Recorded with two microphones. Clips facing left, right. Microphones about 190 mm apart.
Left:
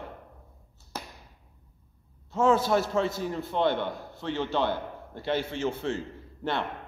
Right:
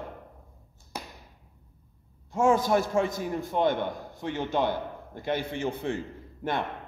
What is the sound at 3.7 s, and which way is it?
Speech, 45° right (ahead or behind).